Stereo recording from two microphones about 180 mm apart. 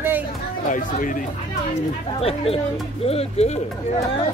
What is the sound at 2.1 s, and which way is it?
Speech, 35° left (ahead or behind).